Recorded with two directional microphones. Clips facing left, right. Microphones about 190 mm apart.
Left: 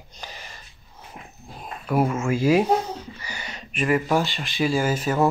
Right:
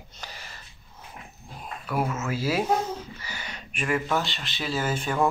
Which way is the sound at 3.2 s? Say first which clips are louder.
Left 2 dB; 10° left (ahead or behind).